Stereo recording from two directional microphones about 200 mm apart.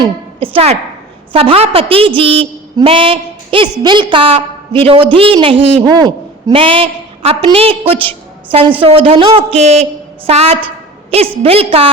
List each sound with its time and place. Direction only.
0.0 s a woman's voice: 25° right (ahead or behind)